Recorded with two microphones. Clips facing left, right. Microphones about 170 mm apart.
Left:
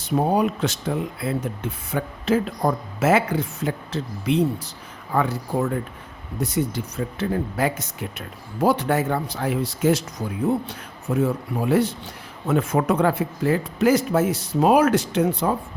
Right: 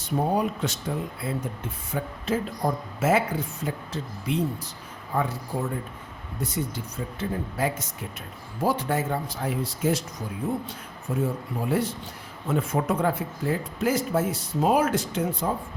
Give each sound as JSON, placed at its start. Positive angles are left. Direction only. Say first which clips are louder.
{"t": 0.0, "sound": "speech", "louder": "left 4 dB", "side_deg": 80}
{"t": 6.4, "sound": "speech", "louder": "left 6 dB", "side_deg": 75}